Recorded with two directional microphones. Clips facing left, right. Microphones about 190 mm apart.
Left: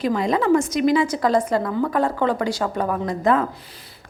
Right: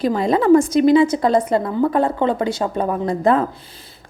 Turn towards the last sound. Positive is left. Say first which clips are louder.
# right 3 dB
turn(degrees=-30)  # may be behind; listen again after turning